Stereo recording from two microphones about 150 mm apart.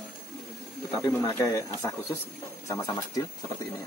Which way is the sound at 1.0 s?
20° left (ahead or behind).